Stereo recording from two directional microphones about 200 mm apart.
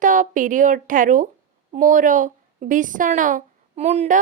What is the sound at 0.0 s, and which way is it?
A woman's voice, 40° right (ahead or behind).